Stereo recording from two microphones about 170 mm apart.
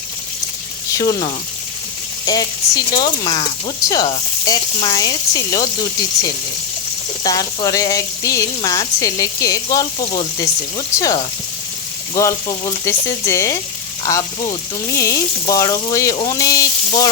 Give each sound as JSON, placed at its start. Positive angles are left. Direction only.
{"t": 0.9, "sound": "speech", "side_deg": 25}
{"t": 7.3, "sound": "speech", "side_deg": 20}